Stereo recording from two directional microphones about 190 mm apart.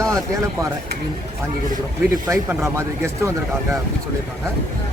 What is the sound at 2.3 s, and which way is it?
Speech, 15° right (ahead or behind).